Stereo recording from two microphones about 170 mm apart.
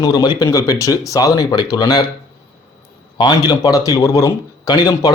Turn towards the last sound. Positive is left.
turn(degrees=25)  # may be behind; listen again after turning